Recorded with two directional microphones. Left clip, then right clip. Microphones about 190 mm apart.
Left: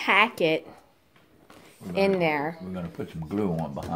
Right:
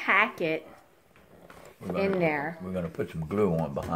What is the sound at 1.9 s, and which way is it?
Speech, 45° left (ahead or behind).